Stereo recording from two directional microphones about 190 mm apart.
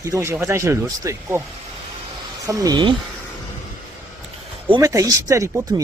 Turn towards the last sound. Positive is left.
turn(degrees=-15)  # may be behind; listen again after turning